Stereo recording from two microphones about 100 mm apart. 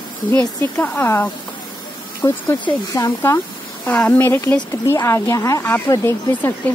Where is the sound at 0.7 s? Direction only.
15° left (ahead or behind).